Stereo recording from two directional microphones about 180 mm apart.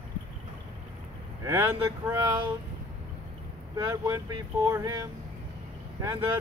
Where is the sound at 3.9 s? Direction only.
20° right (ahead or behind).